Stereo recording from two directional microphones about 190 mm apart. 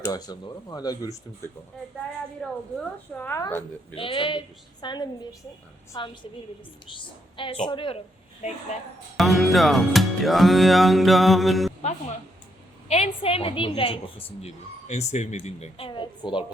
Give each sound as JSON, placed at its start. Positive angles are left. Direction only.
{"t": 0.0, "sound": "a woman's voice", "side_deg": 20}
{"t": 2.4, "sound": "music", "side_deg": 5}
{"t": 3.2, "sound": "a woman's voice", "side_deg": 15}
{"t": 3.9, "sound": "a woman's voice", "side_deg": 25}
{"t": 9.1, "sound": "music", "side_deg": 0}
{"t": 12.9, "sound": "a woman's voice", "side_deg": 30}